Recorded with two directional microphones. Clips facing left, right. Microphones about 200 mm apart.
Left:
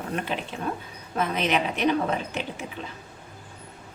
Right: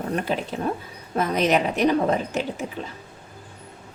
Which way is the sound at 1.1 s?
40° right (ahead or behind).